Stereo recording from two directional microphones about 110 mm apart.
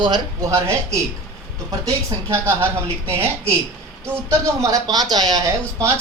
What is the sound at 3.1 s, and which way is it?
A woman's voice, 25° right (ahead or behind).